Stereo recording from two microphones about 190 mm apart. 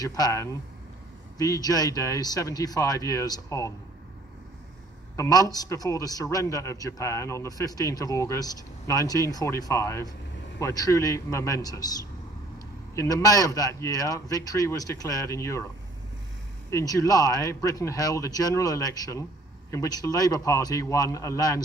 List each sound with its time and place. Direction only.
0.0 s a man's voice: 20° left (ahead or behind)
5.1 s a man's voice: 15° left (ahead or behind)
16.7 s a man's voice: 15° left (ahead or behind)